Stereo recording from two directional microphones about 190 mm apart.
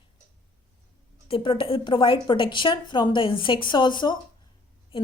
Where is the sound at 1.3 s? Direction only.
25° left (ahead or behind).